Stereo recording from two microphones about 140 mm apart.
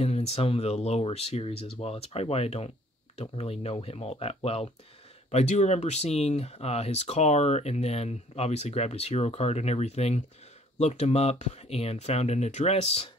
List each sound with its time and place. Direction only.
0.0 s speech: 50° left (ahead or behind)